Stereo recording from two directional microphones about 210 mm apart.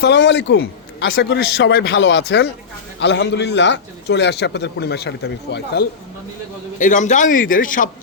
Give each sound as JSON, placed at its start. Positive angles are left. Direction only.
{"t": 0.0, "sound": "a man's voice", "side_deg": 55}
{"t": 6.7, "sound": "a man's voice", "side_deg": 35}